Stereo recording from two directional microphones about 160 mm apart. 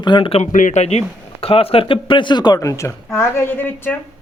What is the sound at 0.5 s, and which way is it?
Speech, 50° left (ahead or behind).